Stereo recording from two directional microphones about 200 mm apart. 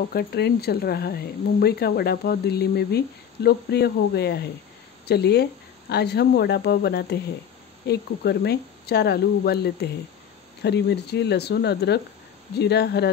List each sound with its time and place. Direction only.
0.1 s speech: 55° left (ahead or behind)